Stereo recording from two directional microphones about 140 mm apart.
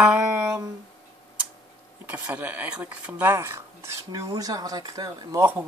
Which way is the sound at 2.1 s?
10° right (ahead or behind).